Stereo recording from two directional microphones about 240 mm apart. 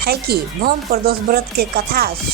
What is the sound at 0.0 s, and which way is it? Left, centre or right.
Speech, right.